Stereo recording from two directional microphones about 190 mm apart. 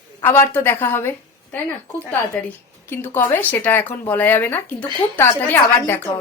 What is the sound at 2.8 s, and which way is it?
Speech, 10° left (ahead or behind).